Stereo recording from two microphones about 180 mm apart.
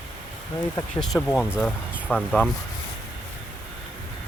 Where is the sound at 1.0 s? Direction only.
5° left (ahead or behind).